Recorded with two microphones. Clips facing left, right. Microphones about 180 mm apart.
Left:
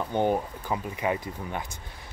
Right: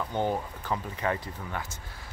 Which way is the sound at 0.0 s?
15° left (ahead or behind).